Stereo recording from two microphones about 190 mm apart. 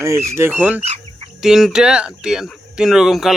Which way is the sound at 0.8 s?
35° right (ahead or behind).